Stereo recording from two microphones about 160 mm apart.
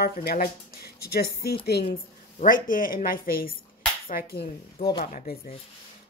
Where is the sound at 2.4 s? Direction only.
60° left (ahead or behind).